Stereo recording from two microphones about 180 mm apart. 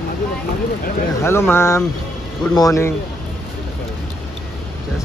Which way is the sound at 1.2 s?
15° left (ahead or behind).